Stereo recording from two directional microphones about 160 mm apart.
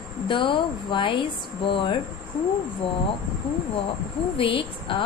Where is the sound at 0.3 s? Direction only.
30° left (ahead or behind).